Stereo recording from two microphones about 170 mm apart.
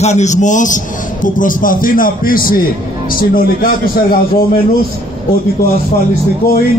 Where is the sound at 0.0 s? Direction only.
40° left (ahead or behind); by 4.2 s 60° left (ahead or behind).